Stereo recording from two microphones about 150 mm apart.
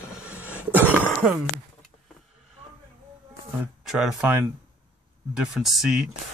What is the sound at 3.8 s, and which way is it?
Speech, 5° right (ahead or behind).